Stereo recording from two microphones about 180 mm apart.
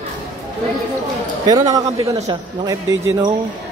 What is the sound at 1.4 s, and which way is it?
Speech, 20° right (ahead or behind).